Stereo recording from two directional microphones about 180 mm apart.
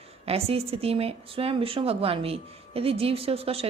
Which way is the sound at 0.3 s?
35° right (ahead or behind).